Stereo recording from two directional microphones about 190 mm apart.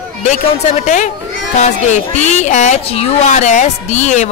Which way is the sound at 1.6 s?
40° left (ahead or behind).